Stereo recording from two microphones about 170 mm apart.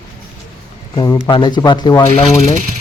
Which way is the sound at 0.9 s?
25° left (ahead or behind).